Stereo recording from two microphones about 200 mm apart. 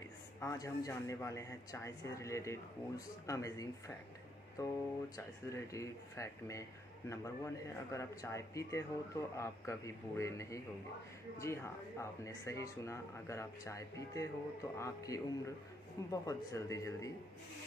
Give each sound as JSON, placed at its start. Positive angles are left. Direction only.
{"t": 0.4, "sound": "speech", "side_deg": 15}
{"t": 5.1, "sound": "speech", "side_deg": 15}